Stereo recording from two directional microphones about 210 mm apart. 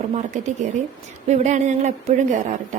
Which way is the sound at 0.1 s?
30° right (ahead or behind).